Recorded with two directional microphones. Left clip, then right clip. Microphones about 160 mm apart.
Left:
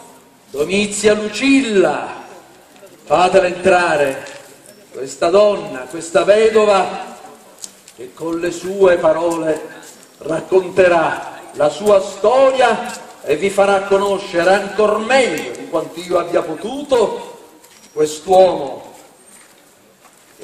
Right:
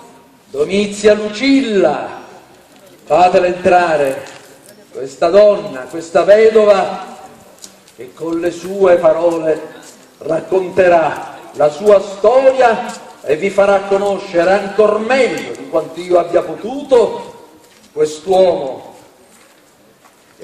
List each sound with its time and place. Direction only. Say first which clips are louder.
0.7 s a man's voice: right 3 dB; 50° left (ahead or behind)
3.1 s a man's voice: right 2 dB; 55° left (ahead or behind)
5.0 s a man's voice: right 4 dB; 50° left (ahead or behind)
8.2 s a man's voice: right 2 dB; 50° left (ahead or behind)